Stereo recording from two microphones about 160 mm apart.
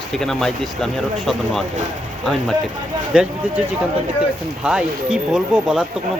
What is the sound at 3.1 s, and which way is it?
Speech, 5° right (ahead or behind).